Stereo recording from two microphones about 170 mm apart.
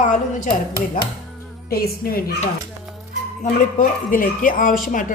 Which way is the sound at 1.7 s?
60° left (ahead or behind).